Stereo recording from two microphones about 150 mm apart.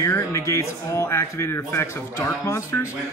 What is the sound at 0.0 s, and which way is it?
Speech, 20° left (ahead or behind).